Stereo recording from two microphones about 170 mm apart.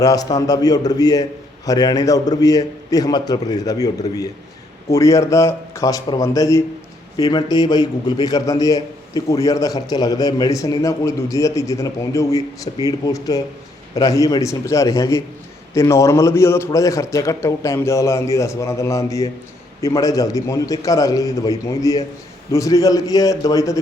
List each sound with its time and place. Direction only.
0.0 s a man's voice: 20° left (ahead or behind)